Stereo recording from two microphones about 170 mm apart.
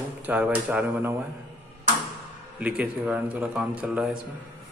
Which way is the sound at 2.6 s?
10° right (ahead or behind).